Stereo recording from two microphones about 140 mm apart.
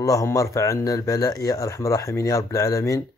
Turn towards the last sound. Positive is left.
turn(degrees=20)  # may be behind; listen again after turning